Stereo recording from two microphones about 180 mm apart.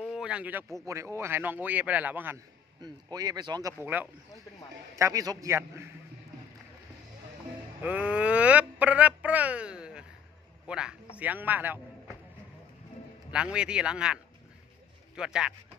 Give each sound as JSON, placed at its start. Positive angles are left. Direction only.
{"t": 0.0, "sound": "a man's voice", "side_deg": -5}
{"t": 2.8, "sound": "speech", "side_deg": -20}
{"t": 3.8, "sound": "a man's voice", "side_deg": -10}
{"t": 7.8, "sound": "a man's voice", "side_deg": -5}
{"t": 13.3, "sound": "speech", "side_deg": -5}